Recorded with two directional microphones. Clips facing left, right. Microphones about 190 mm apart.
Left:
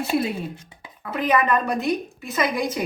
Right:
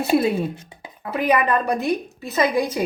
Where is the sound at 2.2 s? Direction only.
35° right (ahead or behind).